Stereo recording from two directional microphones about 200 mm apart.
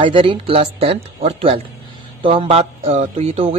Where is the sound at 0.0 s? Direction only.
25° right (ahead or behind).